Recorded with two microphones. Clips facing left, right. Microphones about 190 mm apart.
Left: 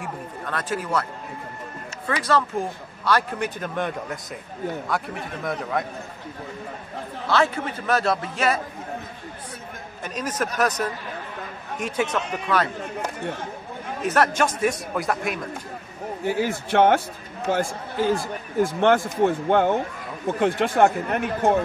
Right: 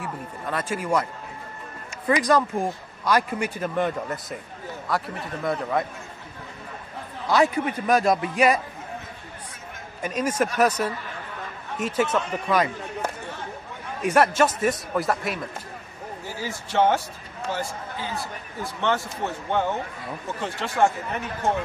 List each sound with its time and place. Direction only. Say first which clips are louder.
0.5 s a man's voice: right 1 dB; 10° right (ahead or behind)
2.0 s a man's voice: right 3 dB; 15° right (ahead or behind)
7.2 s a man's voice: right 2 dB; 15° right (ahead or behind)
10.0 s a man's voice: right 3 dB; 10° right (ahead or behind)
16.3 s speech: left 11 dB; 60° left (ahead or behind)